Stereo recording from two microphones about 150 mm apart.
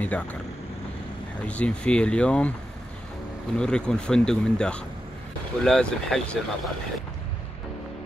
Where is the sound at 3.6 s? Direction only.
5° left (ahead or behind).